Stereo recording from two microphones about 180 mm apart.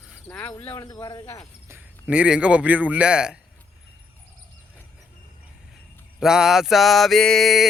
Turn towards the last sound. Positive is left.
turn(degrees=0)  # may be behind; listen again after turning